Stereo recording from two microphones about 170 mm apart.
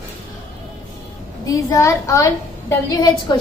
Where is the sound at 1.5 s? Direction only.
20° left (ahead or behind).